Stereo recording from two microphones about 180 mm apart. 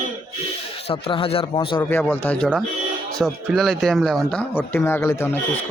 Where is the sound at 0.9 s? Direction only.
30° left (ahead or behind).